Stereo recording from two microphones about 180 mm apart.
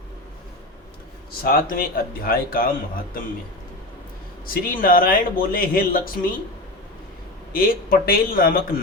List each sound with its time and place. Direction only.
1.5 s speech: 55° left (ahead or behind)
4.4 s speech: 50° left (ahead or behind)
7.5 s a man's voice: 55° left (ahead or behind)